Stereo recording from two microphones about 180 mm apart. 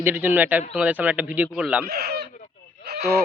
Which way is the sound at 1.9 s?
60° right (ahead or behind).